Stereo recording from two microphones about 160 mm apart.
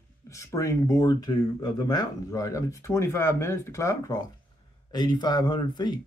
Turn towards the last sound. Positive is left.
turn(degrees=25)  # may be behind; listen again after turning